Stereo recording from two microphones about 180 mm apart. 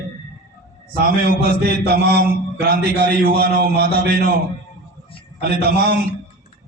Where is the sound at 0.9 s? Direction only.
60° right (ahead or behind).